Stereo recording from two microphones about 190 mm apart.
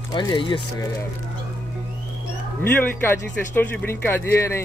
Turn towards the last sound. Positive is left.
turn(degrees=15)  # may be behind; listen again after turning